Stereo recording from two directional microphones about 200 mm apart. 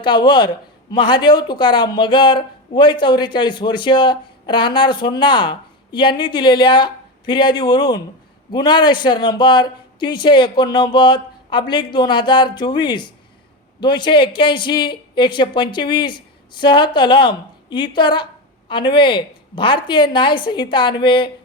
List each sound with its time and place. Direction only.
0.0 s a man's voice: 25° left (ahead or behind)